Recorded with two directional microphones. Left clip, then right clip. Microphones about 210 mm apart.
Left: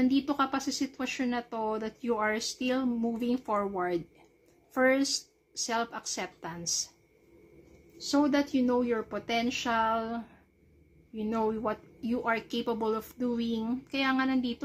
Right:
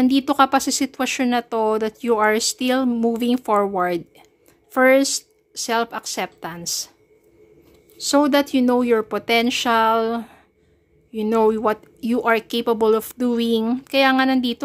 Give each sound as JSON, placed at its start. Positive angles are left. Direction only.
{"t": 0.0, "sound": "a woman's voice", "side_deg": -50}
{"t": 8.0, "sound": "speech", "side_deg": -50}